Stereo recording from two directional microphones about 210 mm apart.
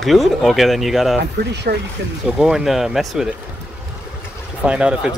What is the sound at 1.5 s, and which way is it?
Speech, 55° right (ahead or behind).